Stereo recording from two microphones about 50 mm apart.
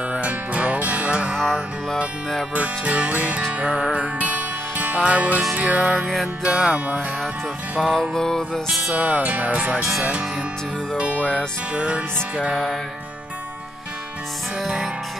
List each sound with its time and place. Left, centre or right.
0.1 s music: right
1.4 s music: centre
2.5 s music: right
6.4 s music: centre
7.8 s music: centre
8.1 s music: centre
8.6 s music: centre
8.9 s music: right
11.1 s music: left
11.7 s music: right
14.6 s music: centre